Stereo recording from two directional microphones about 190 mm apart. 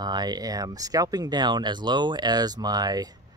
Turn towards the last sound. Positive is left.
turn(degrees=-20)  # may be behind; listen again after turning